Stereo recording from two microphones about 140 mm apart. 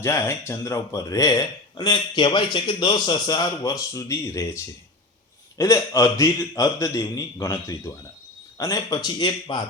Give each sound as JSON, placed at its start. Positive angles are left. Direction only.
{"t": 0.0, "sound": "a man's voice", "side_deg": 20}